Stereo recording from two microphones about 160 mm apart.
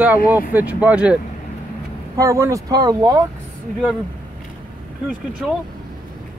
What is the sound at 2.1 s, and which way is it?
Speech, 20° right (ahead or behind).